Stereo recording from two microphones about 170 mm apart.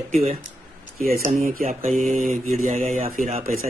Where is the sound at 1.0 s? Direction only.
55° right (ahead or behind); by 3.0 s 40° right (ahead or behind).